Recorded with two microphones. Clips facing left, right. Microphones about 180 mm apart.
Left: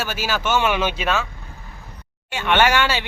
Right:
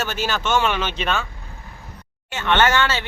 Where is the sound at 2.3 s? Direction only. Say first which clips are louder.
Left 1 dB; 10° left (ahead or behind).